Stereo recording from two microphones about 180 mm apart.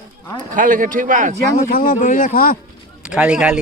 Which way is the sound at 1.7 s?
50° left (ahead or behind).